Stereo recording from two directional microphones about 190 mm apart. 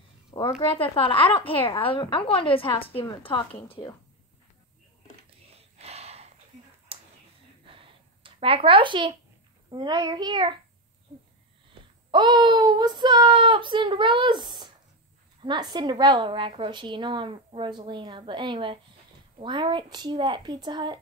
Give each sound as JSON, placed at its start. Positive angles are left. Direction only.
{"t": 0.5, "sound": "a woman's voice", "side_deg": 30}
{"t": 5.6, "sound": "gasp", "side_deg": -35}
{"t": 6.9, "sound": "a sound", "side_deg": -30}
{"t": 9.7, "sound": "a woman's voice", "side_deg": -25}
{"t": 12.1, "sound": "a woman's voice", "side_deg": -25}